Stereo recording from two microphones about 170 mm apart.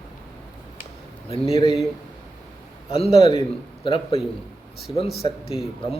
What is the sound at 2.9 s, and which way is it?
Speech, 35° left (ahead or behind).